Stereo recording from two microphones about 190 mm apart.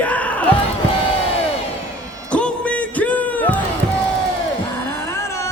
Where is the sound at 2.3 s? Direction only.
5° left (ahead or behind).